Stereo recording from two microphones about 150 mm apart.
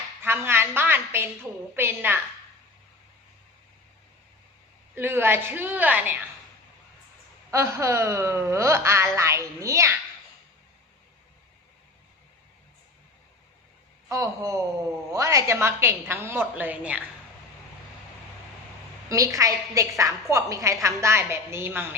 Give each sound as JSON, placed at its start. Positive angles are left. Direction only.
{"t": 0.2, "sound": "a woman's voice", "side_deg": -15}
{"t": 4.9, "sound": "a woman's voice", "side_deg": -15}
{"t": 7.5, "sound": "speech", "side_deg": -20}
{"t": 14.1, "sound": "a woman's voice", "side_deg": -20}
{"t": 19.0, "sound": "a woman's voice", "side_deg": -20}